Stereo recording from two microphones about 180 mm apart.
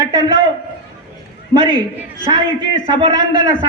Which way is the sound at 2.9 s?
25° right (ahead or behind).